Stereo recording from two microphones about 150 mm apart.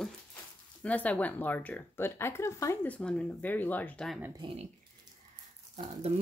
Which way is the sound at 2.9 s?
5° left (ahead or behind).